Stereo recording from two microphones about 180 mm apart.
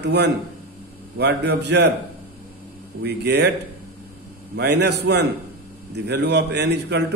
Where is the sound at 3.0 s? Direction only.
65° right (ahead or behind).